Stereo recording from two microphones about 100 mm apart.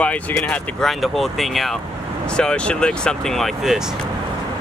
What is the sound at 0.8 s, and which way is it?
Speech, centre (ahead or behind).